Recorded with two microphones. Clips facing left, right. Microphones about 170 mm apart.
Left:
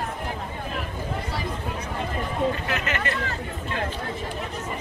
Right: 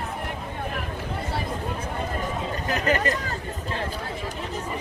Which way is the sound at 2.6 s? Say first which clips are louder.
Right 4 dB; 35° right (ahead or behind).